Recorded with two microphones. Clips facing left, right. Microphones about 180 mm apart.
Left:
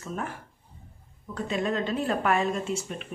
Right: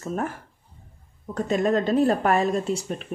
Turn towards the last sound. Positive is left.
turn(degrees=-40)  # may be behind; listen again after turning